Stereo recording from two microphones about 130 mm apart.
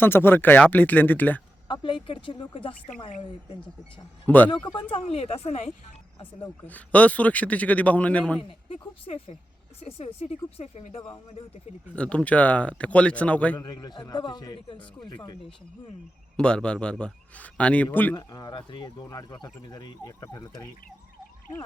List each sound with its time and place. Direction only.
0.0 s a man's voice: 15° left (ahead or behind)
1.6 s speech: 40° left (ahead or behind)
4.4 s speech: 35° left (ahead or behind); by 5.7 s 60° left (ahead or behind)
6.7 s a man's voice: 10° left (ahead or behind)
8.4 s speech: 45° left (ahead or behind)
11.9 s a man's voice: 10° left (ahead or behind)
13.6 s speech: 30° left (ahead or behind)
16.4 s a man's voice: 5° left (ahead or behind)
18.1 s speech: 30° left (ahead or behind)